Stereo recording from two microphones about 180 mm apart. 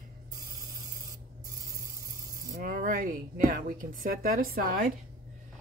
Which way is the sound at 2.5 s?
45° right (ahead or behind).